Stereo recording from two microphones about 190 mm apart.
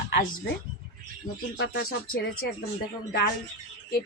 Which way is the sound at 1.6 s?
55° left (ahead or behind).